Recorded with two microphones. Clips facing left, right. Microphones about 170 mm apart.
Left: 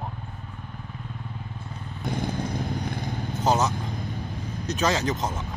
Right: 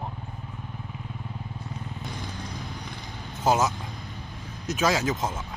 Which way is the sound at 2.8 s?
65° left (ahead or behind).